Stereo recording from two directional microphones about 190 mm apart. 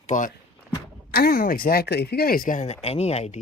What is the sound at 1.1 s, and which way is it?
Speech, 50° left (ahead or behind).